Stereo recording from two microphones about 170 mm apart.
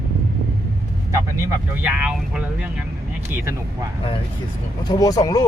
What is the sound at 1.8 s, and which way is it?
Speech, 10° right (ahead or behind).